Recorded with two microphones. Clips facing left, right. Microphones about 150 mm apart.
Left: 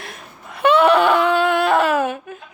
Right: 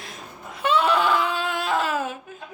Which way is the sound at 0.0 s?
65° left (ahead or behind).